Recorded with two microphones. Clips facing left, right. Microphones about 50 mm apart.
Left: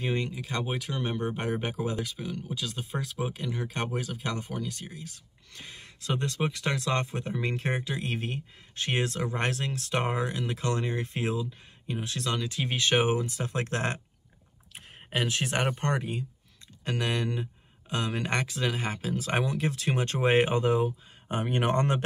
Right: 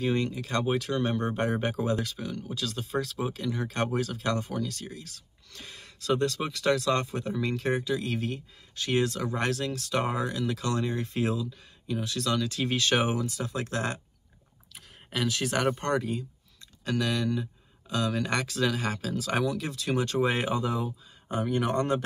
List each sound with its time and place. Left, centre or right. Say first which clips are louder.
0.0 s speech: right 3 dB; centre; by 22.0 s left